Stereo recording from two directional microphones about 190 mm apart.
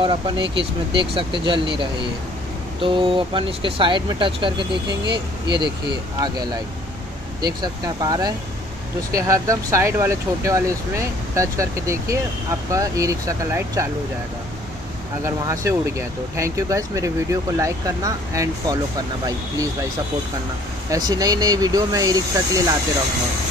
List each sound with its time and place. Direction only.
0.0 s speech: 25° right (ahead or behind)
15.2 s speech: 15° right (ahead or behind)
20.9 s speech: 20° right (ahead or behind)